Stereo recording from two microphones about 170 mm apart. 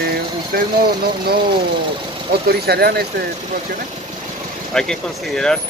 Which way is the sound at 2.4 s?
70° right (ahead or behind).